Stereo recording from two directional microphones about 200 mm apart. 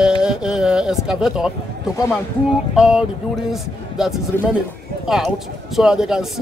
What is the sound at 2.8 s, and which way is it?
Mantra, 5° right (ahead or behind).